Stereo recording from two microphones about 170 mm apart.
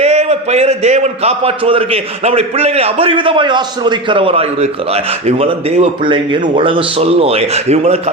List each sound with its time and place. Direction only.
0.0 s a man's voice: 40° right (ahead or behind)